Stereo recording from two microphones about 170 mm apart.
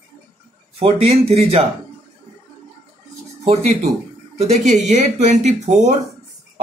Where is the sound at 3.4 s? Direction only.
40° right (ahead or behind).